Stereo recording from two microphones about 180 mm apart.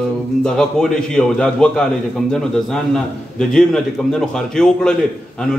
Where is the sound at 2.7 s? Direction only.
5° left (ahead or behind).